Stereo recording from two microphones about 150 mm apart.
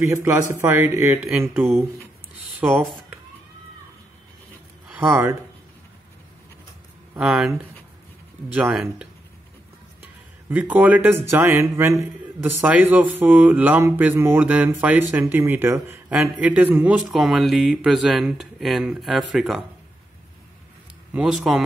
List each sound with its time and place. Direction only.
0.0 s a man's voice: 20° right (ahead or behind)
4.8 s a sound: 15° right (ahead or behind)
7.2 s a man's voice: 5° right (ahead or behind)
10.5 s a man's voice: 10° right (ahead or behind)
21.1 s speech: 5° right (ahead or behind)